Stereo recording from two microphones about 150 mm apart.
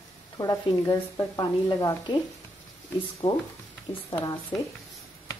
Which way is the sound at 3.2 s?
25° left (ahead or behind).